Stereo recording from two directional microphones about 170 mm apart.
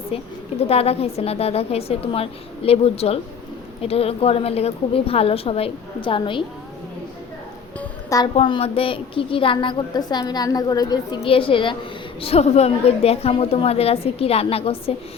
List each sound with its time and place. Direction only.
0.1 s a woman's voice: 35° left (ahead or behind)
8.4 s a woman's voice: 35° left (ahead or behind)